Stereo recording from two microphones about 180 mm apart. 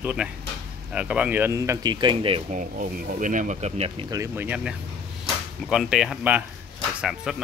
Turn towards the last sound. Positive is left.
turn(degrees=-5)  # may be behind; listen again after turning